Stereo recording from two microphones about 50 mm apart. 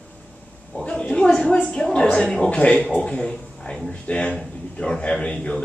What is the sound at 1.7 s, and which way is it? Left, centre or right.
A woman's voice, centre.